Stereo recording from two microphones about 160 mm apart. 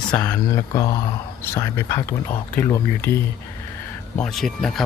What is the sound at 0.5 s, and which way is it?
Speech, 20° left (ahead or behind).